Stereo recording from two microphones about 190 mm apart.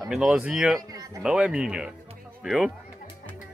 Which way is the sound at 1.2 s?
5° right (ahead or behind).